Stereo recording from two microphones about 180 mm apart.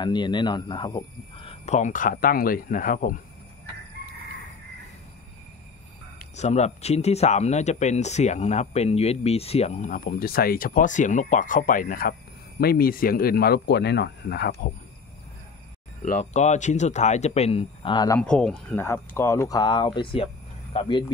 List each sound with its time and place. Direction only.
0.0 s speech: 25° left (ahead or behind); by 3.2 s 45° left (ahead or behind)
6.3 s speech: 40° left (ahead or behind); by 14.5 s 70° left (ahead or behind)
16.0 s speech: 45° left (ahead or behind); by 18.2 s 20° left (ahead or behind)
18.2 s speech: 5° left (ahead or behind); by 20.2 s 30° left (ahead or behind)